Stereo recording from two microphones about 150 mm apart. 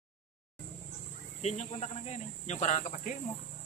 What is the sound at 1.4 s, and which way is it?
Speech, 50° left (ahead or behind).